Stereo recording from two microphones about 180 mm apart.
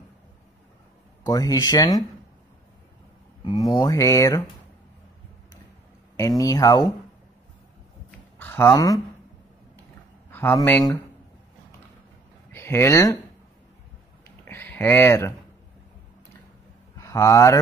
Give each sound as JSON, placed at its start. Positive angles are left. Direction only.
{"t": 1.2, "sound": "speech", "side_deg": 20}
{"t": 3.7, "sound": "speech", "side_deg": 20}
{"t": 6.1, "sound": "speech", "side_deg": 20}
{"t": 8.1, "sound": "a sound", "side_deg": 10}
{"t": 10.3, "sound": "speech", "side_deg": 10}
{"t": 12.5, "sound": "speech", "side_deg": 15}
{"t": 14.4, "sound": "speech", "side_deg": 10}
{"t": 17.0, "sound": "speech", "side_deg": 15}